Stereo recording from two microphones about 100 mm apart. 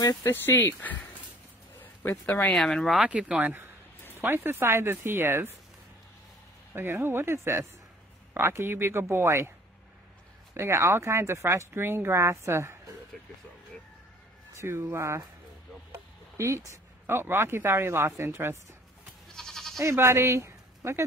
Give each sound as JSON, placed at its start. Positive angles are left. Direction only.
{"t": 0.0, "sound": "speech", "side_deg": 40}
{"t": 0.3, "sound": "speech", "side_deg": 20}
{"t": 2.2, "sound": "speech", "side_deg": 15}
{"t": 2.5, "sound": "speech", "side_deg": 5}
{"t": 3.0, "sound": "speech", "side_deg": -10}
{"t": 6.7, "sound": "speech", "side_deg": -25}
{"t": 10.5, "sound": "speech", "side_deg": -25}
{"t": 14.5, "sound": "speech", "side_deg": -25}
{"t": 15.9, "sound": "chop", "side_deg": -30}
{"t": 16.7, "sound": "speech", "side_deg": -25}
{"t": 19.3, "sound": "goat", "side_deg": 5}
{"t": 19.8, "sound": "speech", "side_deg": -25}